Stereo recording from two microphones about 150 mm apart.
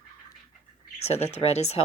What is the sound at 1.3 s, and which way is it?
Speech, 45° left (ahead or behind).